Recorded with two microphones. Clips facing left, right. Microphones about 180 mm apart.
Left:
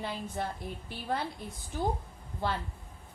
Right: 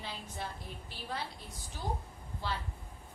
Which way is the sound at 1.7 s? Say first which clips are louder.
Left 7 dB; 55° left (ahead or behind).